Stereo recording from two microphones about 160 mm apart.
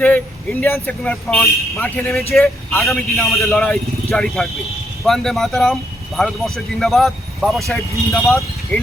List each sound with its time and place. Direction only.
0.6 s a man's voice: 10° left (ahead or behind)
8.1 s speech: 20° left (ahead or behind)